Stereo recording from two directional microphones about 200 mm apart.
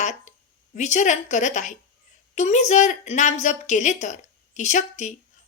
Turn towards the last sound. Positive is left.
turn(degrees=35)  # may be behind; listen again after turning